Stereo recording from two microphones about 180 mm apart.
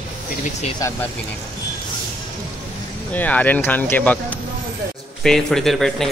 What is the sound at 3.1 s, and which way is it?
Speech, 10° left (ahead or behind).